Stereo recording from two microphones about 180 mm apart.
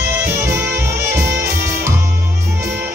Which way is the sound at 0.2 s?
15° right (ahead or behind).